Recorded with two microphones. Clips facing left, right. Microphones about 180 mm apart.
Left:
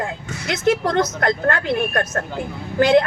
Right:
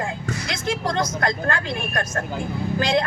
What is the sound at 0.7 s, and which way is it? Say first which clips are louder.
A woman's voice: left 6 dB; 60° left (ahead or behind).